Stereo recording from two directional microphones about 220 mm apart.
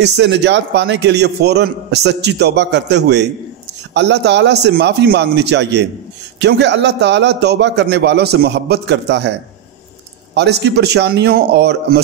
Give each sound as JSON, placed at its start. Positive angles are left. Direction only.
{"t": 0.0, "sound": "a man's voice", "side_deg": -50}
{"t": 10.3, "sound": "a man's voice", "side_deg": -50}